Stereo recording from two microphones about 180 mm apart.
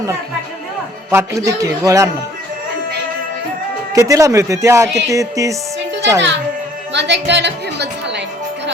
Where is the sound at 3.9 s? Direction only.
15° right (ahead or behind).